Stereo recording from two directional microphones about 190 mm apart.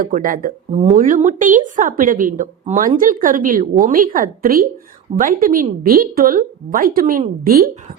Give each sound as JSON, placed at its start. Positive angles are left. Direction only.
{"t": 0.0, "sound": "a woman's voice", "side_deg": -45}